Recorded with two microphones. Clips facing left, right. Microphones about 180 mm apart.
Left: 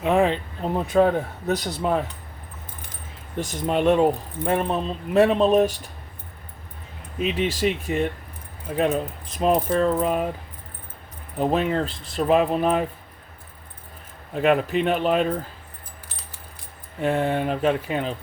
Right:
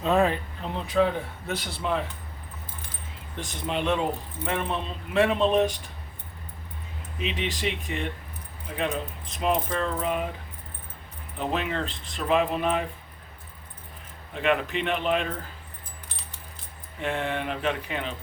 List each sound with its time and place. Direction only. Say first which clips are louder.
0.0 s speech: left 3 dB; 15° left (ahead or behind)
0.6 s speech: left 5 dB; 45° left (ahead or behind)
3.3 s speech: left 7 dB; 45° left (ahead or behind)
7.2 s speech: left 7 dB; 45° left (ahead or behind)
9.3 s speech: left 6 dB; 40° left (ahead or behind)
11.3 s speech: left 7 dB; 40° left (ahead or behind)
14.3 s speech: left 6 dB; 40° left (ahead or behind)
17.0 s speech: left 7 dB; 40° left (ahead or behind)